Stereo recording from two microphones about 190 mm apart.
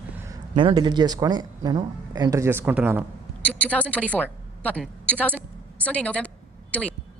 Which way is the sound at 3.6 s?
5° left (ahead or behind).